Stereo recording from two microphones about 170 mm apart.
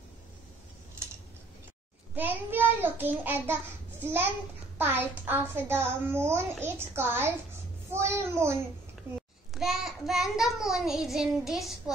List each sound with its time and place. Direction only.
2.1 s a child's voice: 10° right (ahead or behind)
9.5 s child singing: centre (ahead or behind)